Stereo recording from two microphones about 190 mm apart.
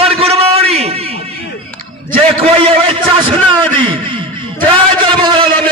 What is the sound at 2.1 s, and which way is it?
A man's voice, 30° right (ahead or behind).